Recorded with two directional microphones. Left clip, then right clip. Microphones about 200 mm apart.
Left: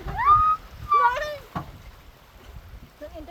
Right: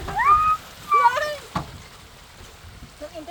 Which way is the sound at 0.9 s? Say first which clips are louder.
Right 3 dB; 15° left (ahead or behind).